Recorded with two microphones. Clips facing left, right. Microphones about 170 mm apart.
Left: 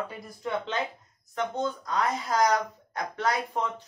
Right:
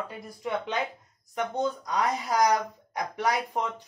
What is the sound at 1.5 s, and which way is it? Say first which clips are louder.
Speech: right 2 dB; 15° right (ahead or behind).